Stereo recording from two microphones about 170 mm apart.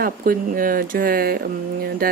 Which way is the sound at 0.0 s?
55° right (ahead or behind).